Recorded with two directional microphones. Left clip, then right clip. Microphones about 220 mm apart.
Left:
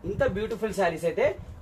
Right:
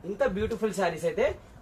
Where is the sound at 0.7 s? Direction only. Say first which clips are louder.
Left 2 dB; 15° left (ahead or behind).